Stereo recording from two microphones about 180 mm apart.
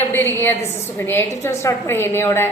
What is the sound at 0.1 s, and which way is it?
A woman's voice, 10° left (ahead or behind).